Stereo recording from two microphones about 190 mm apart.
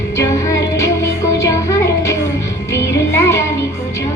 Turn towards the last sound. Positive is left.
turn(degrees=15)  # may be behind; listen again after turning